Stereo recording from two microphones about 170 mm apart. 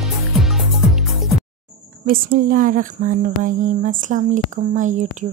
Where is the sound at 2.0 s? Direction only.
60° right (ahead or behind).